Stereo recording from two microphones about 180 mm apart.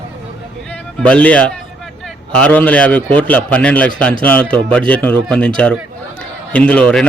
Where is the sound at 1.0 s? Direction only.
5° left (ahead or behind).